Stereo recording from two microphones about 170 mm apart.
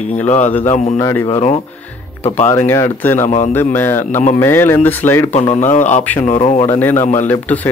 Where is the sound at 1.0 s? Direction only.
20° left (ahead or behind).